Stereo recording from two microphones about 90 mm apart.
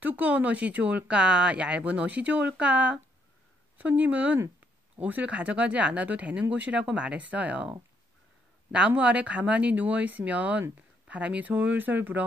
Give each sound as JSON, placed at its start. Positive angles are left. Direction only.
{"t": 0.0, "sound": "speech", "side_deg": -15}
{"t": 8.7, "sound": "speech", "side_deg": -10}